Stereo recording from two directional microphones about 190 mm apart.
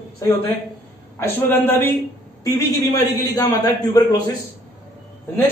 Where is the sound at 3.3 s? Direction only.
20° left (ahead or behind).